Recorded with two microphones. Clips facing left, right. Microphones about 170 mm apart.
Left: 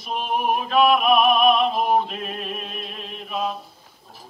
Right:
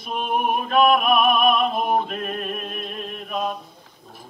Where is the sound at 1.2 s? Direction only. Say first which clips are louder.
Left 1 dB; 50° right (ahead or behind).